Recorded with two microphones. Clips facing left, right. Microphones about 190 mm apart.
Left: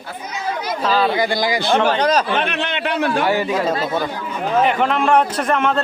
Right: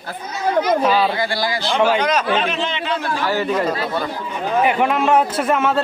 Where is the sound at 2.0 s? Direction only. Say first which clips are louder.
Left 2 dB; 35° left (ahead or behind).